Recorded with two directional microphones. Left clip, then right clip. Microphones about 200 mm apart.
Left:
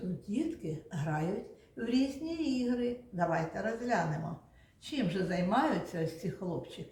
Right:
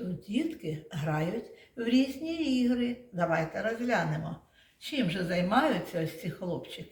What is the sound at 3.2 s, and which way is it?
Speech, 45° right (ahead or behind).